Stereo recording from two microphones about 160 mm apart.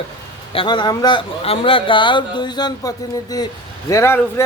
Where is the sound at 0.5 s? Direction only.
30° left (ahead or behind).